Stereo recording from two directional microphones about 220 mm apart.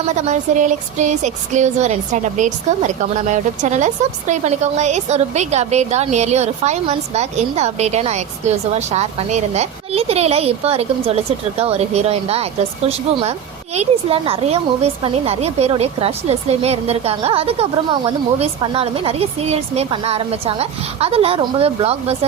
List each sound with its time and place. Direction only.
0.2 s a woman's voice: 35° right (ahead or behind)
13.7 s a woman's voice: 25° right (ahead or behind)